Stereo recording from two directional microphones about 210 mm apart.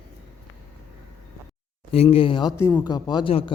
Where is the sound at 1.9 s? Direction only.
30° left (ahead or behind).